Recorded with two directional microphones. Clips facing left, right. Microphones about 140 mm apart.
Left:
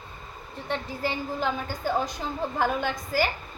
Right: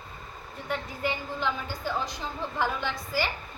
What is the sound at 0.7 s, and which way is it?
A woman's voice, 35° left (ahead or behind).